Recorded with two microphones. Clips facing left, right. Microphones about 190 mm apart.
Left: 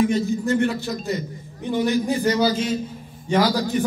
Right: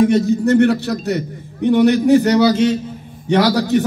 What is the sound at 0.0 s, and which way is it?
A man's voice, 70° right (ahead or behind).